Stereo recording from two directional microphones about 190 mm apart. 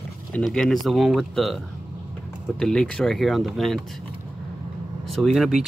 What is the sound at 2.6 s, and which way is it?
Speech, 5° left (ahead or behind).